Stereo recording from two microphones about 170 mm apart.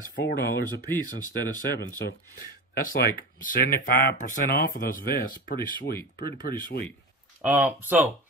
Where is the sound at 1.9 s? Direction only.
55° left (ahead or behind).